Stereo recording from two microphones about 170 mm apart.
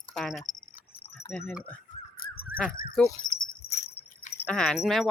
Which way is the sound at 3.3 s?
65° left (ahead or behind).